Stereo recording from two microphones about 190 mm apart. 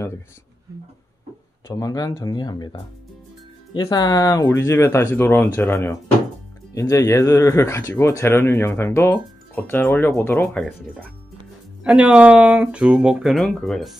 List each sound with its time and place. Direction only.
1.7 s speech: 20° left (ahead or behind); by 13.9 s centre (ahead or behind)